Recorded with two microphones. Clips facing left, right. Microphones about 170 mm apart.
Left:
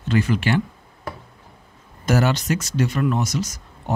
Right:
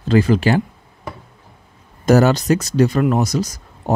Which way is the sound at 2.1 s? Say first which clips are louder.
Right 7 dB; 35° right (ahead or behind).